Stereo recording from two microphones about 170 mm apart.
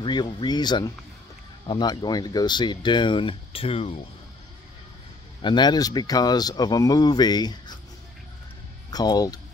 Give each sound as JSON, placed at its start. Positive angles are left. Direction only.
{"t": 0.0, "sound": "speech", "side_deg": 25}
{"t": 5.4, "sound": "speech", "side_deg": 25}
{"t": 8.9, "sound": "speech", "side_deg": 25}